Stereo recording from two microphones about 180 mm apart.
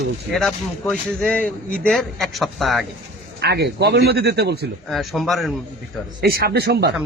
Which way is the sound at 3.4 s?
65° right (ahead or behind).